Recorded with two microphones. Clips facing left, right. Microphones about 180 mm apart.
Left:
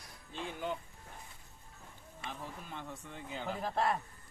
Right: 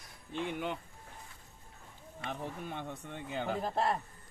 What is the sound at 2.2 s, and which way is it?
Speech, 60° right (ahead or behind).